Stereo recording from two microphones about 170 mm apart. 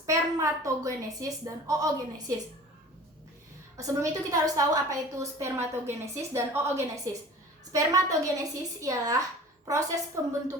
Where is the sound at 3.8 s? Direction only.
20° right (ahead or behind).